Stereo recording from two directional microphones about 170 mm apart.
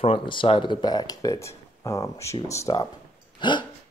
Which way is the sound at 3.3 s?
25° left (ahead or behind).